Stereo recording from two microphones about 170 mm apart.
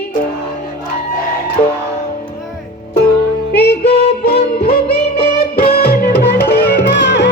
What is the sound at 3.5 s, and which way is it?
Music, 75° left (ahead or behind).